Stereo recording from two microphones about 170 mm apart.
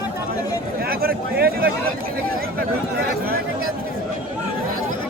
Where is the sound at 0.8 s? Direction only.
65° right (ahead or behind).